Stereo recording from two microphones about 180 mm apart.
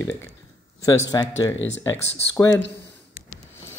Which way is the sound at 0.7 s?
20° left (ahead or behind).